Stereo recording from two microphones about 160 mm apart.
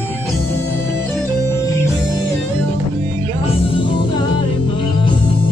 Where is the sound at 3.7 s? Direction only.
30° left (ahead or behind).